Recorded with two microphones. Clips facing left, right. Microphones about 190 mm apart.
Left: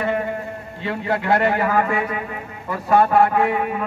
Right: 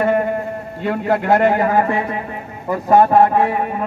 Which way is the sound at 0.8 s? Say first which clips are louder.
Right 4 dB; 45° right (ahead or behind).